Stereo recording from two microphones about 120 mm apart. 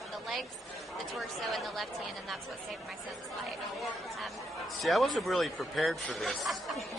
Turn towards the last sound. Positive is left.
turn(degrees=0)  # may be behind; listen again after turning